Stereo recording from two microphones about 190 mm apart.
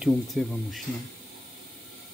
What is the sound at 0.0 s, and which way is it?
Speech, centre (ahead or behind).